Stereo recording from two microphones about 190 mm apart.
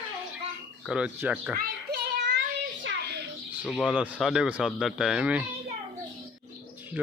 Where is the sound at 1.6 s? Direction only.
60° right (ahead or behind).